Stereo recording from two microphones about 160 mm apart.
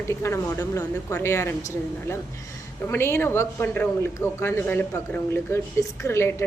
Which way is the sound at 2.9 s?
15° left (ahead or behind).